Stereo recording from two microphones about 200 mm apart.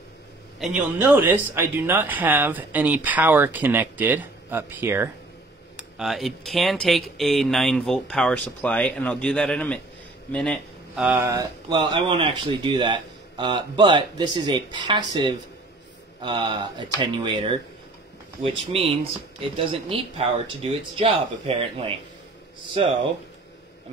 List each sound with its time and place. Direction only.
0.6 s a man's voice: 5° right (ahead or behind)
11.1 s speech: 15° right (ahead or behind)
18.7 s speech: 30° right (ahead or behind)
22.8 s speech: 30° right (ahead or behind)